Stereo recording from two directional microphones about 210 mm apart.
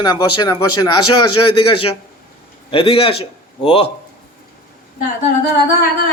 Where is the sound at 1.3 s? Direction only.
90° left.